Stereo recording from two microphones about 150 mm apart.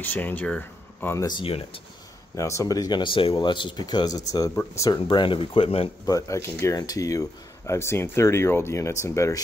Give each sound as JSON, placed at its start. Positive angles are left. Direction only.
{"t": 0.0, "sound": "speech", "side_deg": 10}
{"t": 1.2, "sound": "speech", "side_deg": 35}
{"t": 2.3, "sound": "speech", "side_deg": 20}
{"t": 6.0, "sound": "speech", "side_deg": 20}